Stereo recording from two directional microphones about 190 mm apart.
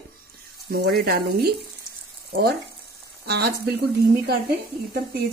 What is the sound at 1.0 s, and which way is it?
A woman's voice, 55° right (ahead or behind).